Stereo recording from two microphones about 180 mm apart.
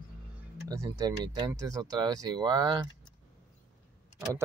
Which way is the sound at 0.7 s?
20° right (ahead or behind).